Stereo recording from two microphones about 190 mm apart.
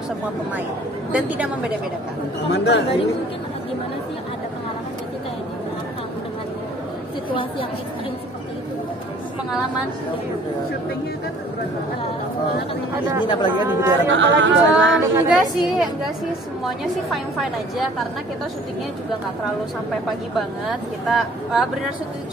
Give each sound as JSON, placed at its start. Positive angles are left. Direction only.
{"t": 1.1, "sound": "a woman's voice", "side_deg": -5}
{"t": 2.5, "sound": "speech", "side_deg": 65}
{"t": 13.2, "sound": "speech", "side_deg": 25}
{"t": 13.6, "sound": "a woman's voice", "side_deg": -15}
{"t": 14.0, "sound": "speech", "side_deg": -75}
{"t": 15.6, "sound": "speech", "side_deg": 0}
{"t": 20.1, "sound": "speech", "side_deg": 0}